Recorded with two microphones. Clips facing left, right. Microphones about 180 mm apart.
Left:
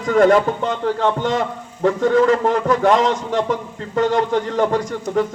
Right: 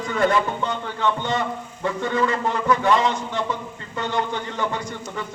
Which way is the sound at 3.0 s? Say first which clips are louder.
Left 5 dB; 90° left.